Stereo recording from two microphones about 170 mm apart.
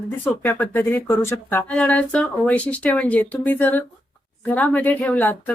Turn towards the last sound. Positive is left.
turn(degrees=10)  # may be behind; listen again after turning